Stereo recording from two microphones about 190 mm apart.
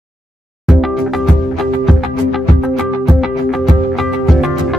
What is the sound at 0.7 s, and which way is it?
Music, centre (ahead or behind).